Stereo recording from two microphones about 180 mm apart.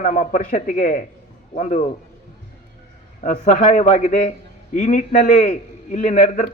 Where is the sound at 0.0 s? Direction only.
45° left (ahead or behind).